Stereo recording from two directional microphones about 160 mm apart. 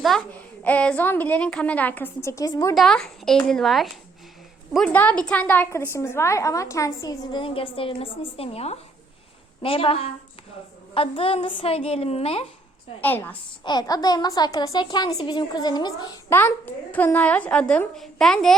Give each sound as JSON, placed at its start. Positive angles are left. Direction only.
{"t": 0.6, "sound": "a woman's voice", "side_deg": 10}
{"t": 2.7, "sound": "a woman's voice", "side_deg": 5}
{"t": 7.4, "sound": "a woman's voice", "side_deg": 35}
{"t": 13.0, "sound": "a woman's voice", "side_deg": 10}
{"t": 13.7, "sound": "speech", "side_deg": 25}
{"t": 16.3, "sound": "a woman's voice", "side_deg": 15}